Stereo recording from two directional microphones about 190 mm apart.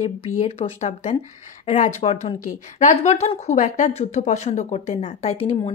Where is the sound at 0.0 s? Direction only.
35° left (ahead or behind).